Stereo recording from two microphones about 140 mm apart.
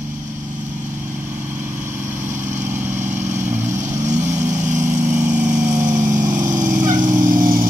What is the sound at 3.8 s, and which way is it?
Vehicle, 60° right (ahead or behind).